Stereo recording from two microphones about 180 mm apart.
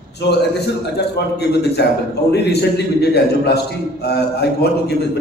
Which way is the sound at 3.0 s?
65° left (ahead or behind).